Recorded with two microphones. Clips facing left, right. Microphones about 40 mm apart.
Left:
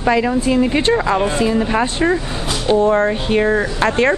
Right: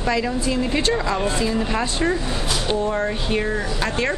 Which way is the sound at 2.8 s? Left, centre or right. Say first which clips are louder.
Left 8 dB; left.